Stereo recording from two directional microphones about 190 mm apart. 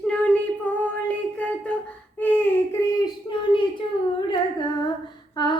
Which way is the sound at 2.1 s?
10° left (ahead or behind).